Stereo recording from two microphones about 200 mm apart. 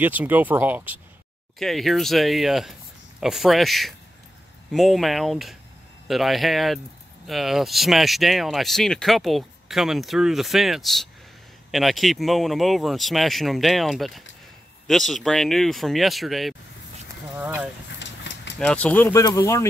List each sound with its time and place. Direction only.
0.0 s speech: 10° right (ahead or behind)
17.8 s vehicle: 60° left (ahead or behind)
18.6 s speech: 5° left (ahead or behind)